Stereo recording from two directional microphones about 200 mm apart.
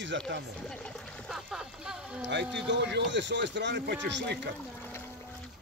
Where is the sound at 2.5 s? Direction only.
60° right (ahead or behind).